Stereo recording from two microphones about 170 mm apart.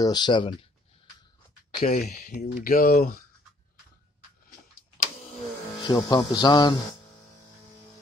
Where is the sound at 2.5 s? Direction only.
55° left (ahead or behind).